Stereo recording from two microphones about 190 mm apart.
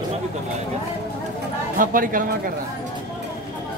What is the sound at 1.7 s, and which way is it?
Speech, 45° right (ahead or behind).